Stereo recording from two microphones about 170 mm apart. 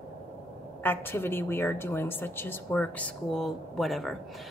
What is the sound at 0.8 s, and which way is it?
A woman's voice, 10° left (ahead or behind).